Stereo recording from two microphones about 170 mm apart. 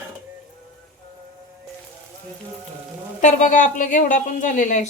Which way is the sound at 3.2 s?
50° left (ahead or behind).